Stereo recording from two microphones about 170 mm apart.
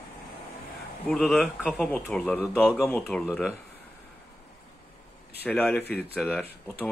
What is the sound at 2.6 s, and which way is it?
Speech, 5° right (ahead or behind).